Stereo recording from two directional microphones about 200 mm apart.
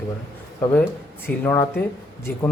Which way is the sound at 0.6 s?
10° left (ahead or behind).